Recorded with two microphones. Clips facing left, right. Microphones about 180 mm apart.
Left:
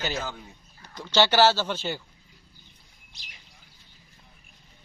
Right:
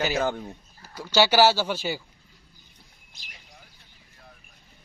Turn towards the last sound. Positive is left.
turn(degrees=-50)  # may be behind; listen again after turning